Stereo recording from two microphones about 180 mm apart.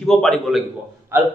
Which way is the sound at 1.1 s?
15° right (ahead or behind).